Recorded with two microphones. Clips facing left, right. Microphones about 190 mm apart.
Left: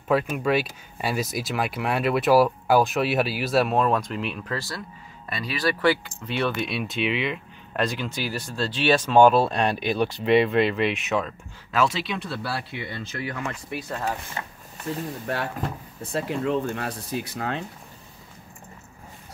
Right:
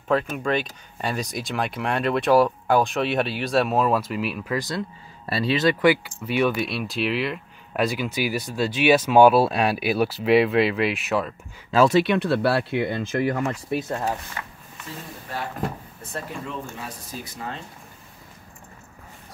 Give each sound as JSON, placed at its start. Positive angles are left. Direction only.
{"t": 0.1, "sound": "speech", "side_deg": 5}
{"t": 4.6, "sound": "speech", "side_deg": -20}
{"t": 11.9, "sound": "speech", "side_deg": -60}
{"t": 13.7, "sound": "speech", "side_deg": -25}
{"t": 14.4, "sound": "speech", "side_deg": 30}
{"t": 16.4, "sound": "speech", "side_deg": 65}